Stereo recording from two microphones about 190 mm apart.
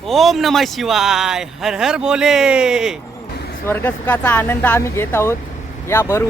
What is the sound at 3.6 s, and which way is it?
Speech, 10° left (ahead or behind).